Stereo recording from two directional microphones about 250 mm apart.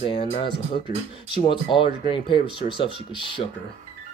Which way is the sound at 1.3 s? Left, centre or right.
Centre.